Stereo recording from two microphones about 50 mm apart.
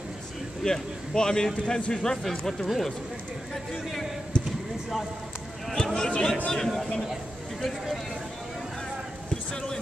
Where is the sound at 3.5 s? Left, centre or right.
Centre.